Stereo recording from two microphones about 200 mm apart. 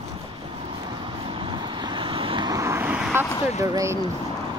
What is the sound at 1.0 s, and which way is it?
Vehicle, 25° right (ahead or behind).